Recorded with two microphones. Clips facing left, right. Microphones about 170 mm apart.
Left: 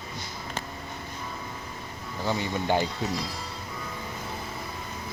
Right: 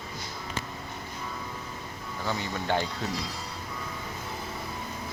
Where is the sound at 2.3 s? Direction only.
15° left (ahead or behind).